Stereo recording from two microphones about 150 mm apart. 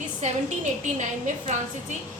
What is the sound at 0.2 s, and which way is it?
Speech, 50° right (ahead or behind).